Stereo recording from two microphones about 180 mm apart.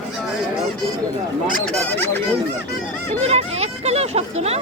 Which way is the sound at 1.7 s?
10° left (ahead or behind).